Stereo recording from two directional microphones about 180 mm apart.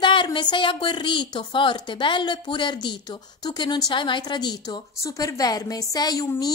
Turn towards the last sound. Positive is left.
turn(degrees=20)  # may be behind; listen again after turning